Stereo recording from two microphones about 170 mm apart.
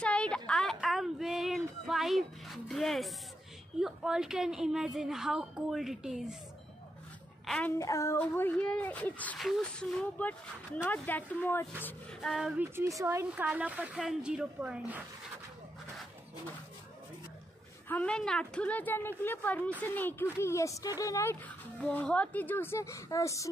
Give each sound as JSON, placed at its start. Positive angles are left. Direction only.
{"t": 0.0, "sound": "a sound", "side_deg": 5}
{"t": 3.8, "sound": "speech", "side_deg": -5}
{"t": 7.4, "sound": "child singing", "side_deg": 5}
{"t": 7.7, "sound": "speech", "side_deg": 15}
{"t": 12.6, "sound": "a woman's voice", "side_deg": -15}
{"t": 17.8, "sound": "speech", "side_deg": 5}